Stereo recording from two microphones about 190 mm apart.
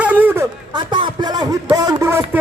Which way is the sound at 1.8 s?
15° right (ahead or behind).